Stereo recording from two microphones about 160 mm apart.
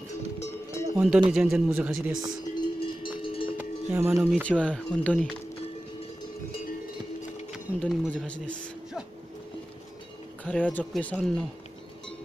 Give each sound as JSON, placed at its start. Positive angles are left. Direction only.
{"t": 0.4, "sound": "music", "side_deg": 15}
{"t": 0.9, "sound": "speech", "side_deg": -5}
{"t": 2.5, "sound": "cowbell", "side_deg": 30}
{"t": 3.5, "sound": "cowbell", "side_deg": -15}
{"t": 4.5, "sound": "speech", "side_deg": 5}
{"t": 7.5, "sound": "speech", "side_deg": 0}
{"t": 10.4, "sound": "speech", "side_deg": 10}